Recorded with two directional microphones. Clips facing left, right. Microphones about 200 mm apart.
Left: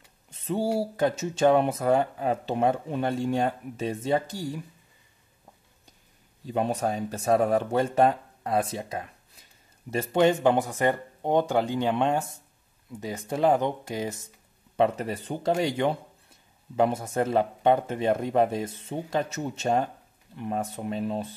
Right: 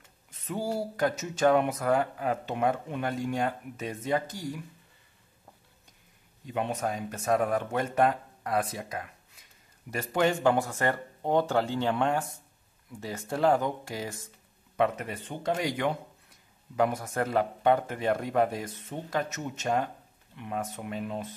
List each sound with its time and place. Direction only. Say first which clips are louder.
0.3 s a sound: left 6 dB; 30° left (ahead or behind)
0.7 s speech: left 3 dB; 25° left (ahead or behind)
6.4 s speech: left 4 dB; 35° left (ahead or behind)
14.8 s speech: left 3 dB; 35° left (ahead or behind)